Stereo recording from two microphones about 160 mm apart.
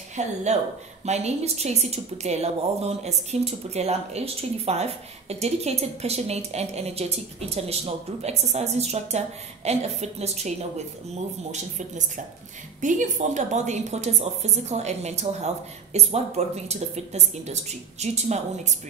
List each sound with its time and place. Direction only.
0.1 s a woman's voice: 45° right (ahead or behind)
12.8 s a woman's voice: 50° right (ahead or behind)